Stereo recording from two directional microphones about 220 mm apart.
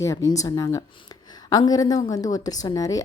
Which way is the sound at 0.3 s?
20° left (ahead or behind).